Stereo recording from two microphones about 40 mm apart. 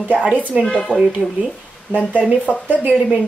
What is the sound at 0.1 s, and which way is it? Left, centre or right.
Speech, right.